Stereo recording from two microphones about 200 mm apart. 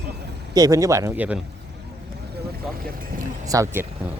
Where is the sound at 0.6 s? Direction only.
15° right (ahead or behind).